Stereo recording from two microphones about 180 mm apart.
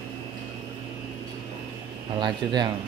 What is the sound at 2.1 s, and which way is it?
Speech, 25° right (ahead or behind).